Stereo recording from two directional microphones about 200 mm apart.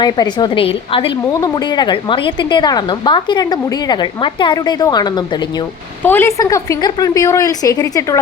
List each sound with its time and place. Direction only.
0.0 s a woman's voice: 20° left (ahead or behind)
6.0 s a woman's voice: 10° left (ahead or behind)